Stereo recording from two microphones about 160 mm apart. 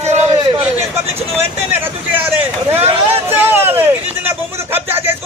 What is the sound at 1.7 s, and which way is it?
Speech, 15° right (ahead or behind).